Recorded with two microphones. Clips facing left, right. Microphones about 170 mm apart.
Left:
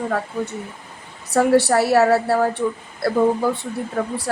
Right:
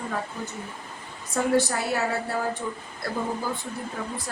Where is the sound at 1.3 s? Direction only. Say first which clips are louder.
Left 8 dB; 70° left (ahead or behind).